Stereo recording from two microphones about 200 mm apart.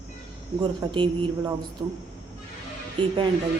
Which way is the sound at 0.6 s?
25° right (ahead or behind).